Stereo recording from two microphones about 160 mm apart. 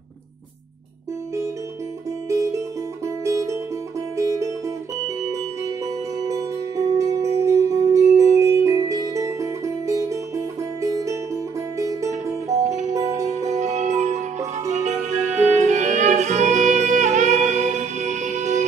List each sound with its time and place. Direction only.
2.2 s music: 20° right (ahead or behind)
6.2 s music: 20° right (ahead or behind)
12.6 s music: 45° right (ahead or behind)